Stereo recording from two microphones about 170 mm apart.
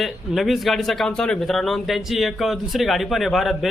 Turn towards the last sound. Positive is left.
turn(degrees=0)  # may be behind; listen again after turning